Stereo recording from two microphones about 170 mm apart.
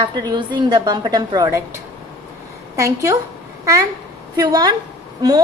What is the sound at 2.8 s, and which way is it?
A woman's voice, 20° right (ahead or behind).